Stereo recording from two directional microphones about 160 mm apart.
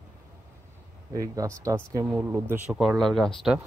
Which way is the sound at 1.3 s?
20° right (ahead or behind).